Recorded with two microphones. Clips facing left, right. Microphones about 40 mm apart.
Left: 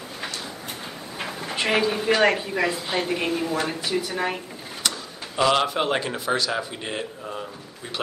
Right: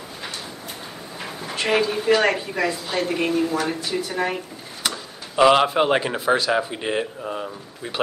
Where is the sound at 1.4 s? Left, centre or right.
Centre.